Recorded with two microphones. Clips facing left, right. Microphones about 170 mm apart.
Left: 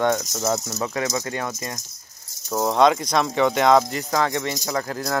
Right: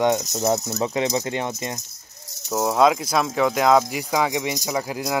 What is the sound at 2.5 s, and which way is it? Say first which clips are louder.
Speech: even; 5° right (ahead or behind).